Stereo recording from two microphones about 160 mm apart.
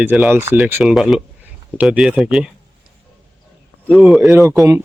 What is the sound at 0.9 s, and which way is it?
Speech, centre (ahead or behind).